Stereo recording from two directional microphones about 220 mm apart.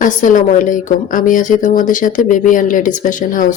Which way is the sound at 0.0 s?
35° left (ahead or behind).